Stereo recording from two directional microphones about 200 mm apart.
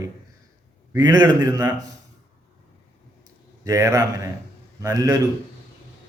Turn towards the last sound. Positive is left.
turn(degrees=-15)  # may be behind; listen again after turning